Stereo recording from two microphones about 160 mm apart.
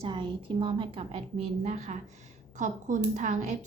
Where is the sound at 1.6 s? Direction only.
50° right (ahead or behind).